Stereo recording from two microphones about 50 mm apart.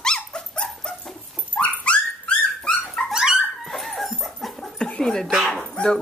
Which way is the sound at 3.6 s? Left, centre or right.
Centre.